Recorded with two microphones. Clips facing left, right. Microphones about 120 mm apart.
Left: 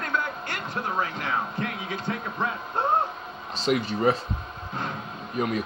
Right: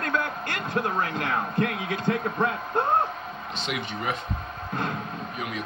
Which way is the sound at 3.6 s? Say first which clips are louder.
Left 8 dB; 35° left (ahead or behind).